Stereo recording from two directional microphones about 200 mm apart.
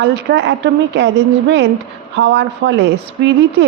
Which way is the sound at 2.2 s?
65° right (ahead or behind).